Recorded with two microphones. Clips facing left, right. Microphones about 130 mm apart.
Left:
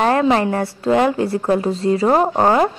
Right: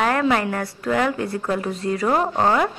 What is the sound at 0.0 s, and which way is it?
A woman's voice, 30° left (ahead or behind).